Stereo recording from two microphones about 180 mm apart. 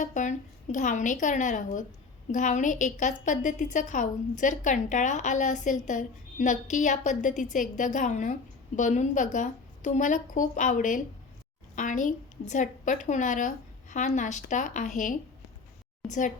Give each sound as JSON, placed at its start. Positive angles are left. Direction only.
{"t": 0.0, "sound": "a woman's voice", "side_deg": 45}